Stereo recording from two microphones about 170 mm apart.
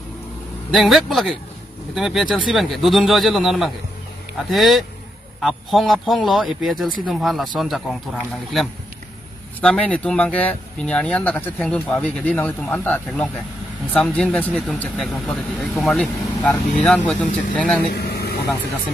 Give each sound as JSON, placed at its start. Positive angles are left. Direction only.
{"t": 0.7, "sound": "speech", "side_deg": 0}
{"t": 17.9, "sound": "vehicle", "side_deg": 70}